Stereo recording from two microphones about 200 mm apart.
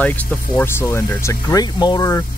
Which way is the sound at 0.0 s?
10° left (ahead or behind).